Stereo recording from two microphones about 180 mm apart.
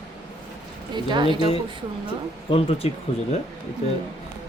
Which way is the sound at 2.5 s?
35° left (ahead or behind).